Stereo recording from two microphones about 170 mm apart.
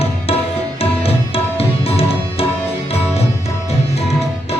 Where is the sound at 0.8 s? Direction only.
35° left (ahead or behind).